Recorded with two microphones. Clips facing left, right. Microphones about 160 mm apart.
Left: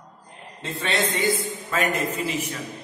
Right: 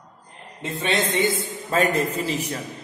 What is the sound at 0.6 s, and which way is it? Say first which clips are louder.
Speech: right 3 dB; 15° right (ahead or behind).